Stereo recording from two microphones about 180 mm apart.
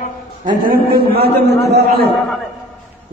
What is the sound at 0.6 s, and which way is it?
Speech, 55° right (ahead or behind).